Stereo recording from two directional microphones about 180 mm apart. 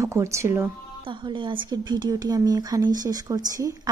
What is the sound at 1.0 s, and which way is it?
Speech, 25° right (ahead or behind).